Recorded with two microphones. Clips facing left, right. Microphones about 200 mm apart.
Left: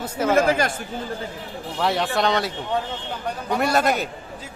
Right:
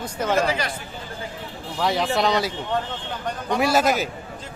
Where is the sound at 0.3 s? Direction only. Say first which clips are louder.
Left 4 dB; 50° left (ahead or behind).